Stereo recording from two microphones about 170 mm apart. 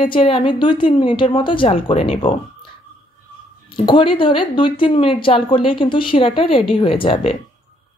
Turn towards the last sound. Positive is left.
turn(degrees=35)  # may be behind; listen again after turning